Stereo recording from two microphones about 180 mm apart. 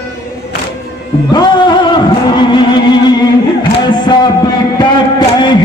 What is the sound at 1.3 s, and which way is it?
Music, 25° left (ahead or behind).